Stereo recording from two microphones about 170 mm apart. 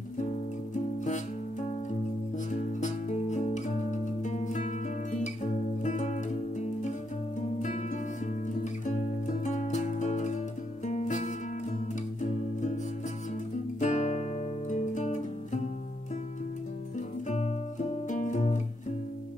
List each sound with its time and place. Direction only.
2.5 s music: 45° left (ahead or behind)
9.4 s music: 45° left (ahead or behind)
10.9 s guitar: 45° left (ahead or behind)
13.7 s music: 45° left (ahead or behind)
17.3 s music: 45° left (ahead or behind)